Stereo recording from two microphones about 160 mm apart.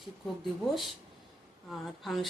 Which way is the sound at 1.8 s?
Centre (ahead or behind).